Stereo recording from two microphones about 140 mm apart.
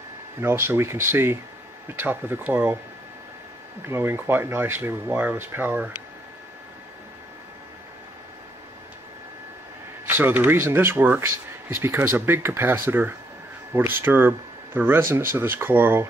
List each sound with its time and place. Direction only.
0.4 s speech: 15° right (ahead or behind)
3.8 s speech: 15° right (ahead or behind)
10.0 s speech: 15° right (ahead or behind)